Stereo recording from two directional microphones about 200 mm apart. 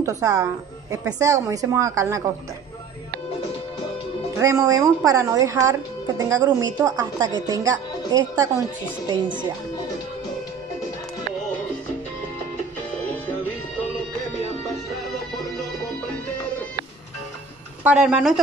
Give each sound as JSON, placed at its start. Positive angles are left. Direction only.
{"t": 0.0, "sound": "a woman's voice", "side_deg": -15}
{"t": 4.4, "sound": "a woman's voice", "side_deg": -15}
{"t": 17.8, "sound": "speech", "side_deg": -5}